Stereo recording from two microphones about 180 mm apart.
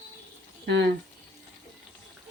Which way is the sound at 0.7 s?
75° right (ahead or behind).